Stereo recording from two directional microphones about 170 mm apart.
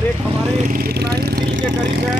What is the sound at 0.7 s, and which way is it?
Speech, 60° right (ahead or behind).